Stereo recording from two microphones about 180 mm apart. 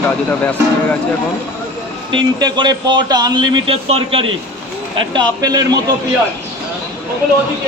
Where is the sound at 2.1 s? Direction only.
25° right (ahead or behind).